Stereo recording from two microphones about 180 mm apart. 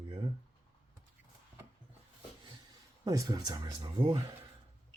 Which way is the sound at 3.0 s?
20° right (ahead or behind).